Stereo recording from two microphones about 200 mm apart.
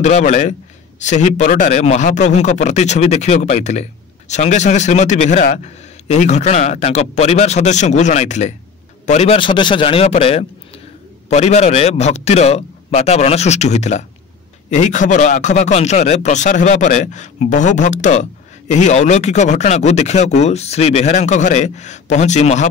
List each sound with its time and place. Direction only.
0.0 s a man's voice: 35° left (ahead or behind)